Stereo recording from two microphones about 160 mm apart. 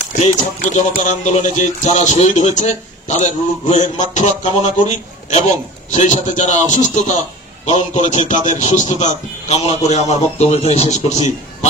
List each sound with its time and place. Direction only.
0.2 s speech: 45° left (ahead or behind)